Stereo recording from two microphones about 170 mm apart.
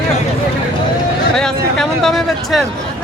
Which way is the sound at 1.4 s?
5° left (ahead or behind).